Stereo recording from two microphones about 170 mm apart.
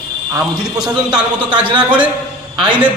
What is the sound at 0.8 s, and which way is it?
Speech, 5° right (ahead or behind).